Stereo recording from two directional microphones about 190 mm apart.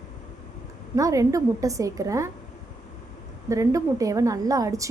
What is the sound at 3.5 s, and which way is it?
A woman's voice, 15° right (ahead or behind).